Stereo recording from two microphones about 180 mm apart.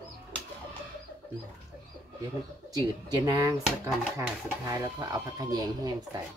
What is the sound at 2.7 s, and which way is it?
Speech, 20° right (ahead or behind).